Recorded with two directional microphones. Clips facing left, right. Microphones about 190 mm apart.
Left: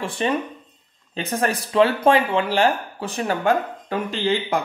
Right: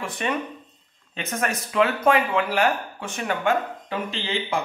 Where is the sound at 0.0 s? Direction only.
30° left (ahead or behind).